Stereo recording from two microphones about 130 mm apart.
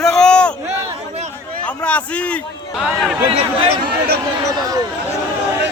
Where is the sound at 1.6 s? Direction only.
10° left (ahead or behind).